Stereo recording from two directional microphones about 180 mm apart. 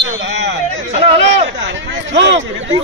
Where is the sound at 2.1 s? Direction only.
85° right.